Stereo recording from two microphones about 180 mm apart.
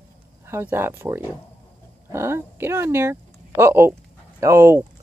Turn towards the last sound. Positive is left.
turn(degrees=-15)  # may be behind; listen again after turning